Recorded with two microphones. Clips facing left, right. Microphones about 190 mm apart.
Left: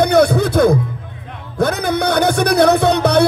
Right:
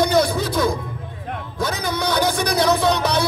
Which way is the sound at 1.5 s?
60° left (ahead or behind).